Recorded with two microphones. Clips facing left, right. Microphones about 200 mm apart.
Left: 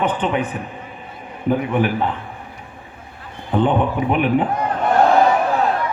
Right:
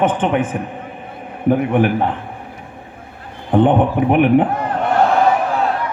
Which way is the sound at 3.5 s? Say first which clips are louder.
Right 4 dB; 55° right (ahead or behind).